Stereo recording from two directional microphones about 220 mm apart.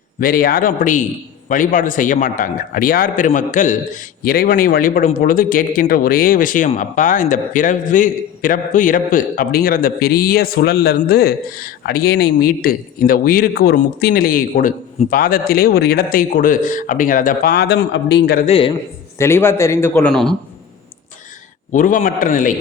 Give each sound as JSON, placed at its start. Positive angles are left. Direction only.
{"t": 0.2, "sound": "speech", "side_deg": 40}
{"t": 18.4, "sound": "a man's voice", "side_deg": 25}
{"t": 19.2, "sound": "speech", "side_deg": 10}
{"t": 21.7, "sound": "speech", "side_deg": 35}